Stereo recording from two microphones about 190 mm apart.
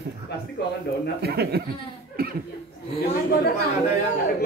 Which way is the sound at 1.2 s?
60° right (ahead or behind).